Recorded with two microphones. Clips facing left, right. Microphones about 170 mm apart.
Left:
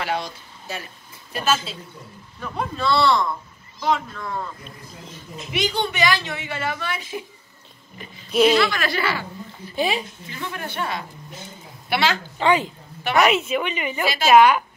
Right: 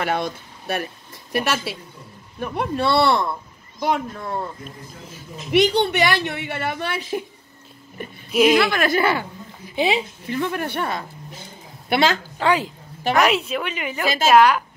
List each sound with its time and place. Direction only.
0.0 s a woman's voice: 55° right (ahead or behind)
4.2 s speech: 35° right (ahead or behind)
5.5 s a woman's voice: 65° right (ahead or behind)
8.3 s speech: 10° right (ahead or behind)
8.6 s speech: 50° right (ahead or behind)
9.7 s a woman's voice: 20° right (ahead or behind)
10.2 s speech: 55° right (ahead or behind)
12.4 s a woman's voice: centre (ahead or behind)